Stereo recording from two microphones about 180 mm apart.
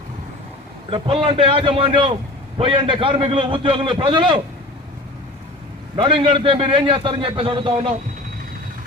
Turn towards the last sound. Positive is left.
turn(degrees=-30)  # may be behind; listen again after turning